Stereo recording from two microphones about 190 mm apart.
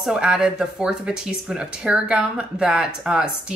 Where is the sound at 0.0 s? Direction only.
5° right (ahead or behind).